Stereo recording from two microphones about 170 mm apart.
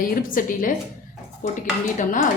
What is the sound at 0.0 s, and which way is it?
Speech, 55° left (ahead or behind).